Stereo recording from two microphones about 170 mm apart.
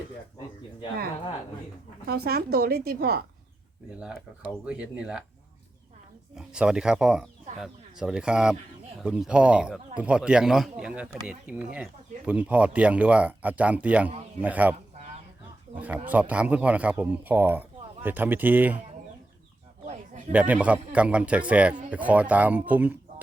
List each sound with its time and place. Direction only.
2.0 s a woman's voice: 65° right (ahead or behind)
4.6 s speech: 5° right (ahead or behind)
6.3 s speech: 5° right (ahead or behind)
19.8 s a sound: 45° right (ahead or behind)
20.3 s speech: 10° right (ahead or behind)